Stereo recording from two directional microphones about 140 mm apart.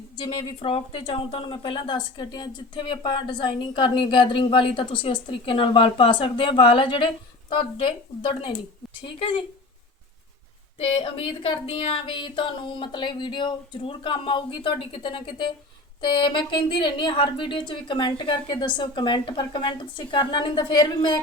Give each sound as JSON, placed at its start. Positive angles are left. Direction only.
{"t": 0.2, "sound": "speech", "side_deg": 40}
{"t": 10.8, "sound": "speech", "side_deg": 40}